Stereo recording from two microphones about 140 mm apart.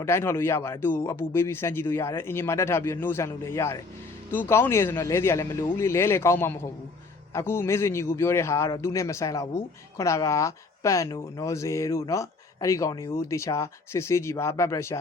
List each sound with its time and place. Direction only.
0.0 s a man's voice: 20° left (ahead or behind)